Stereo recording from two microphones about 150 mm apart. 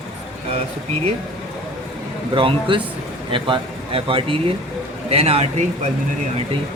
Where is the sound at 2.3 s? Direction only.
35° right (ahead or behind).